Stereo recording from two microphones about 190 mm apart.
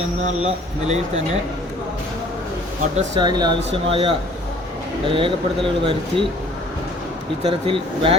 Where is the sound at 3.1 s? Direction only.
25° right (ahead or behind).